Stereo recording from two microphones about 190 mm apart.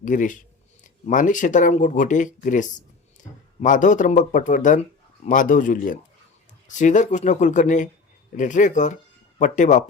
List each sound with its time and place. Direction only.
0.0 s speech: 45° left (ahead or behind)